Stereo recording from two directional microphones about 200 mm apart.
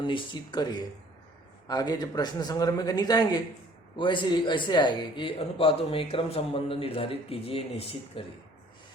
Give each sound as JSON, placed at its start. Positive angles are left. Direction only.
{"t": 0.0, "sound": "a man's voice", "side_deg": 20}